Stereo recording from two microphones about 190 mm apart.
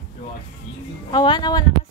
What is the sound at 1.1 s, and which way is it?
Speech, 20° left (ahead or behind).